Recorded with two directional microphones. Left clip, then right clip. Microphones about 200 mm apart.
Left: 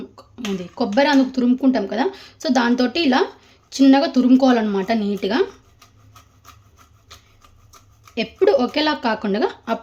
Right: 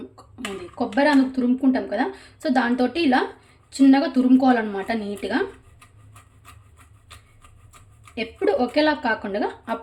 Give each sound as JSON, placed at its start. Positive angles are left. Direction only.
{"t": 0.8, "sound": "a woman's voice", "side_deg": 45}
{"t": 8.1, "sound": "a woman's voice", "side_deg": 45}